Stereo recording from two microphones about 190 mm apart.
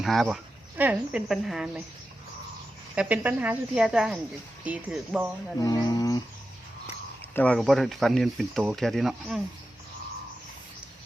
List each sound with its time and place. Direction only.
0.0 s speech: centre (ahead or behind)
2.9 s speech: 5° right (ahead or behind)
5.5 s speech: 20° left (ahead or behind)
7.2 s speech: 10° left (ahead or behind)